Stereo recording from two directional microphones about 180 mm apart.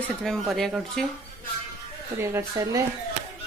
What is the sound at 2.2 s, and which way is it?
Speech, 15° right (ahead or behind).